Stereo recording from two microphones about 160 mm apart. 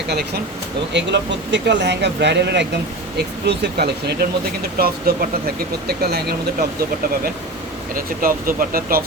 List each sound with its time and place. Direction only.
0.9 s speech: 90° right
4.8 s speech: 70° right (ahead or behind)
5.9 s speech: 85° right
7.9 s speech: 60° right (ahead or behind)